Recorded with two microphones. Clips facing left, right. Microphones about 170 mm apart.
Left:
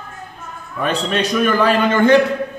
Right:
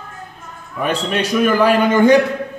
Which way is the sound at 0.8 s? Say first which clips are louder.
Even; 10° right (ahead or behind).